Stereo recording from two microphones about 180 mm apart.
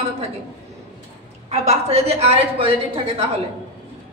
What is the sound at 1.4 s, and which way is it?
A woman's voice, 35° right (ahead or behind).